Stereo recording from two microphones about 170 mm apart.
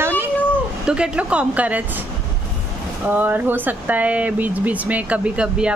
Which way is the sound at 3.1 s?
10° right (ahead or behind).